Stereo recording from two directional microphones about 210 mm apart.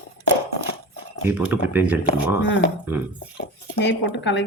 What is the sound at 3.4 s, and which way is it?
Speech, 55° left (ahead or behind).